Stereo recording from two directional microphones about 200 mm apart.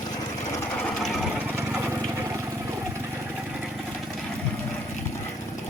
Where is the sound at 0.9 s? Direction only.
Centre (ahead or behind).